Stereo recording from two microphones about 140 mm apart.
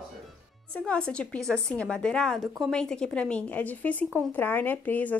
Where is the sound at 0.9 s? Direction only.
5° left (ahead or behind).